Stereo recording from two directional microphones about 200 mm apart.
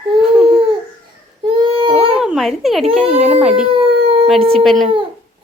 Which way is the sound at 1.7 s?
25° right (ahead or behind).